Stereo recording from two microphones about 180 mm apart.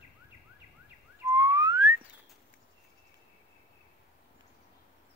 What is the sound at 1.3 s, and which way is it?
Whistling, 20° right (ahead or behind).